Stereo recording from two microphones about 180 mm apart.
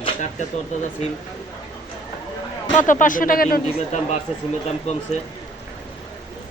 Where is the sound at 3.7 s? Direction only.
40° left (ahead or behind).